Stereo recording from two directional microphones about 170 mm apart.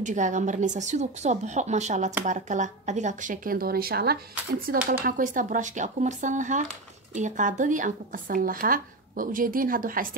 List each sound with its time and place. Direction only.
0.0 s a woman's voice: 45° right (ahead or behind)